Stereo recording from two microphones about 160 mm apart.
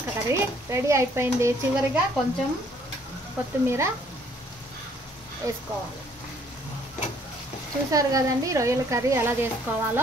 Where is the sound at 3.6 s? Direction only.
15° right (ahead or behind).